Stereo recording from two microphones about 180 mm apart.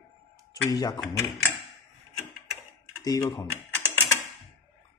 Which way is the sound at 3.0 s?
20° left (ahead or behind).